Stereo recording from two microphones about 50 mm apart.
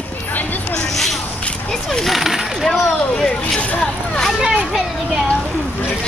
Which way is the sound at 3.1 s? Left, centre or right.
Centre.